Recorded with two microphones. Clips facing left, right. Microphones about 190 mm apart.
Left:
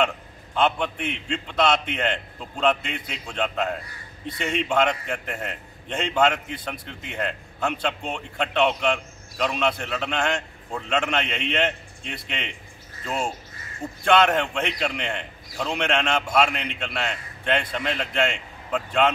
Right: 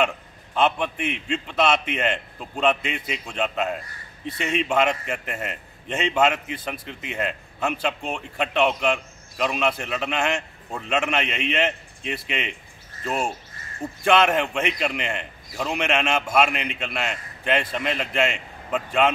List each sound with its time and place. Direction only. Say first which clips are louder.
0.6 s a man's voice: right 1 dB; 5° right (ahead or behind)